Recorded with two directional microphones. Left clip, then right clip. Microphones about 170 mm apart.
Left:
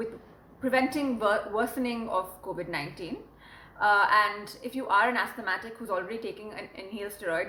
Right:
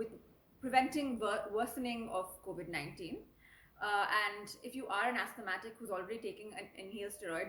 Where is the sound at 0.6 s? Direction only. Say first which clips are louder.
Left 6 dB; 20° left (ahead or behind).